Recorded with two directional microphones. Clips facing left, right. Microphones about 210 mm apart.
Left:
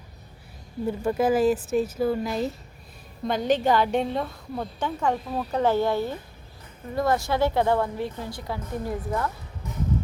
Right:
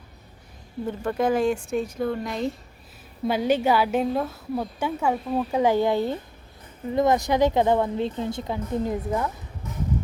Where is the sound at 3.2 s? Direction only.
10° right (ahead or behind).